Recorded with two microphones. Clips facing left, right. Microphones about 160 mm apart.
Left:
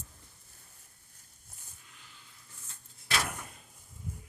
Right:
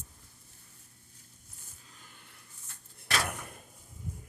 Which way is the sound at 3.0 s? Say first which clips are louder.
Right 1 dB; 55° right (ahead or behind).